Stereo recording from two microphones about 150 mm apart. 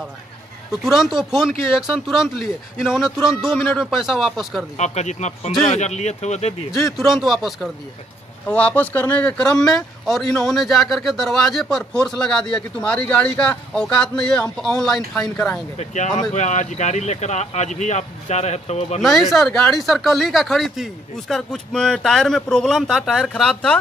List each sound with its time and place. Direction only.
0.8 s speech: 5° right (ahead or behind)
4.7 s speech: 50° left (ahead or behind)
7.0 s speech: centre (ahead or behind)
15.8 s speech: 50° left (ahead or behind)
19.0 s speech: centre (ahead or behind)